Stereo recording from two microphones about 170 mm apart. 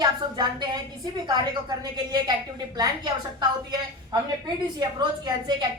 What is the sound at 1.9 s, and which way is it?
A woman's voice, 25° right (ahead or behind).